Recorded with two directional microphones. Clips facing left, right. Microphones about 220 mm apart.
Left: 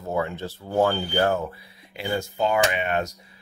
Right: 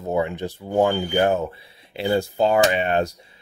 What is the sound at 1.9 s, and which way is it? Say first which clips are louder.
Speech: right 6 dB; 30° right (ahead or behind).